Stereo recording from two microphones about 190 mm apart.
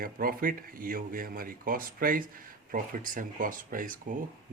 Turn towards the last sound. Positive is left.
turn(degrees=-45)  # may be behind; listen again after turning